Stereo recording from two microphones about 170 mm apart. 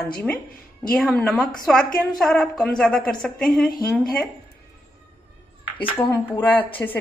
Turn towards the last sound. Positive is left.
turn(degrees=10)  # may be behind; listen again after turning